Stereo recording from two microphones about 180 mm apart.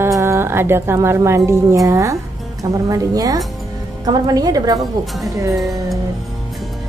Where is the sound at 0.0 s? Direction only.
15° right (ahead or behind).